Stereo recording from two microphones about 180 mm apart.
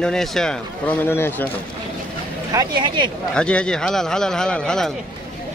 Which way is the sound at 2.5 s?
20° right (ahead or behind).